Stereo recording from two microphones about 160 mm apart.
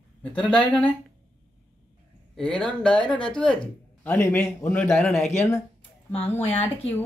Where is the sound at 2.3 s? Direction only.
5° left (ahead or behind).